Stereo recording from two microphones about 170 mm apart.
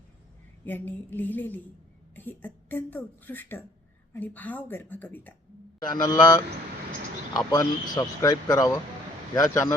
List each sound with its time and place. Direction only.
0.6 s speech: 10° left (ahead or behind)
5.8 s speech: 25° left (ahead or behind)